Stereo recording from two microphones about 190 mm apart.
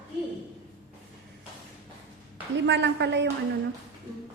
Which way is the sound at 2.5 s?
65° right (ahead or behind).